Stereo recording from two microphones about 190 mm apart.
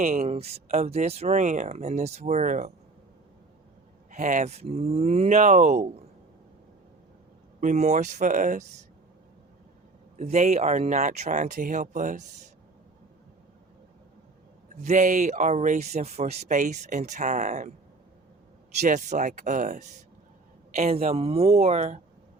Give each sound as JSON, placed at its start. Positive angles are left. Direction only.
{"t": 0.0, "sound": "speech", "side_deg": -35}
{"t": 4.1, "sound": "speech", "side_deg": -40}
{"t": 7.6, "sound": "speech", "side_deg": -35}
{"t": 10.2, "sound": "speech", "side_deg": -35}
{"t": 14.8, "sound": "speech", "side_deg": -40}
{"t": 18.7, "sound": "speech", "side_deg": -40}